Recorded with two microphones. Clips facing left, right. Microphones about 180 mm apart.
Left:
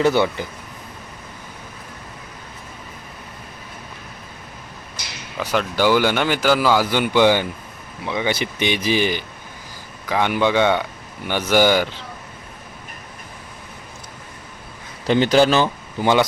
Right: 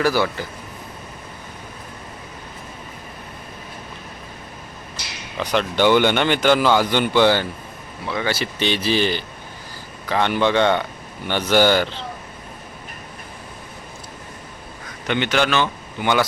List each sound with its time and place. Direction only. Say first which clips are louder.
0.0 s a man's voice: left 2 dB; 20° left (ahead or behind)
5.4 s speech: right 1 dB; 5° left (ahead or behind)
15.0 s speech: left 6 dB; 35° left (ahead or behind)